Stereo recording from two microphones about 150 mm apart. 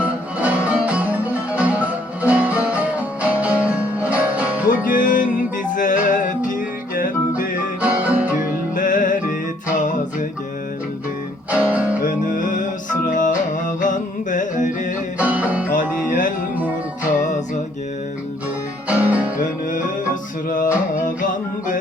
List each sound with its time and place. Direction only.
0.0 s music: 10° right (ahead or behind)
4.7 s music: 65° left (ahead or behind)
7.8 s music: 10° right (ahead or behind)
8.7 s music: 60° left (ahead or behind)
11.5 s music: 10° right (ahead or behind)
12.0 s music: 65° left (ahead or behind)
15.2 s music: 10° right (ahead or behind)
15.7 s music: 60° left (ahead or behind)
18.9 s music: 10° right (ahead or behind)